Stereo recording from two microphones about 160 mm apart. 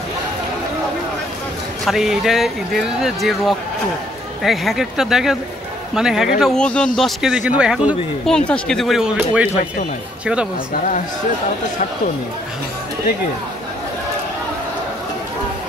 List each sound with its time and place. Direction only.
1.9 s a man's voice: centre (ahead or behind)